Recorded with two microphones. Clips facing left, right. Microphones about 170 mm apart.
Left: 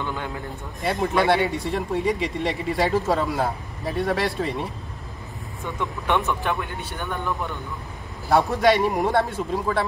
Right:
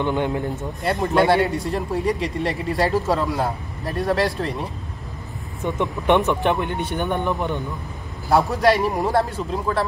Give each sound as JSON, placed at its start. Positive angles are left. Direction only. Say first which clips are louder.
{"t": 0.0, "sound": "speech", "louder": "right 8 dB", "side_deg": -20}
{"t": 0.8, "sound": "speech", "louder": "right 2 dB", "side_deg": 0}
{"t": 5.6, "sound": "speech", "louder": "right 6 dB", "side_deg": -20}
{"t": 8.3, "sound": "speech", "louder": "right 1 dB", "side_deg": 0}